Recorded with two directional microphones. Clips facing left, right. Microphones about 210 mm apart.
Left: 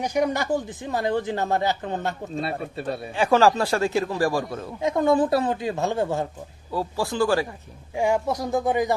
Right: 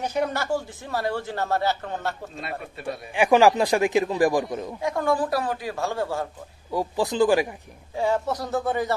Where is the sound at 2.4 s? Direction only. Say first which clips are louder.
Left 6 dB; 30° left (ahead or behind).